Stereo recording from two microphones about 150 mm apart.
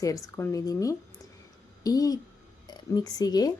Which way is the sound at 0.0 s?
20° left (ahead or behind).